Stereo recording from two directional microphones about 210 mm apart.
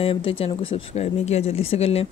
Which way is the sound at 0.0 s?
25° left (ahead or behind).